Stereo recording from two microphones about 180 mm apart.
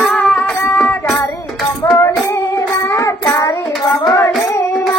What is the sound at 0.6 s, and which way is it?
Music, 15° left (ahead or behind).